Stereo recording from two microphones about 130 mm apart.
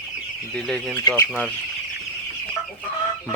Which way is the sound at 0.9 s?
25° left (ahead or behind).